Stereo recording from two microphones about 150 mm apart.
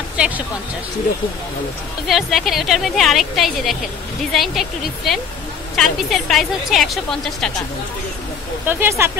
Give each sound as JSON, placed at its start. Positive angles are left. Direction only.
{"t": 2.0, "sound": "speech", "side_deg": 0}
{"t": 8.6, "sound": "speech", "side_deg": -15}